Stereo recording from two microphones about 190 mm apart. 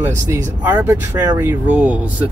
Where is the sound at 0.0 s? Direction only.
10° right (ahead or behind).